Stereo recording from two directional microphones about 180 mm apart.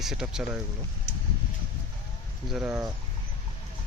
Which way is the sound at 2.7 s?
15° right (ahead or behind).